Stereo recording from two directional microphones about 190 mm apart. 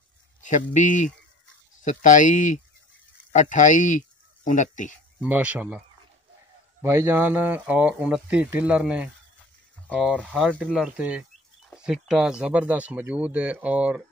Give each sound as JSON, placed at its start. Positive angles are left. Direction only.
{"t": 0.4, "sound": "speech", "side_deg": 40}
{"t": 5.2, "sound": "speech", "side_deg": -5}
{"t": 6.8, "sound": "speech", "side_deg": -15}
{"t": 10.2, "sound": "speech", "side_deg": -5}